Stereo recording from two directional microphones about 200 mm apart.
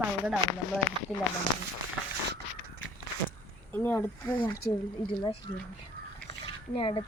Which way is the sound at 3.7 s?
10° left (ahead or behind).